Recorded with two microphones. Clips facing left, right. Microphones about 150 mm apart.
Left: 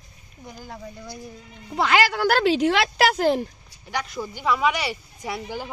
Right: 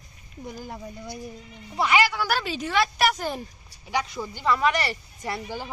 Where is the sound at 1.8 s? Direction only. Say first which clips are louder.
Left 2 dB; 85° left.